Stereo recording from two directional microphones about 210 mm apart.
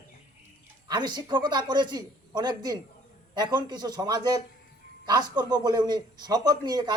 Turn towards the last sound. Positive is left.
turn(degrees=-20)  # may be behind; listen again after turning